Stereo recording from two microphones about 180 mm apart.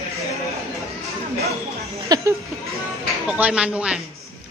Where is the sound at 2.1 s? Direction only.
20° right (ahead or behind).